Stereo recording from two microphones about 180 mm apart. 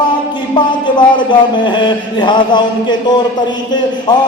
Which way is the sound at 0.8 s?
25° left (ahead or behind).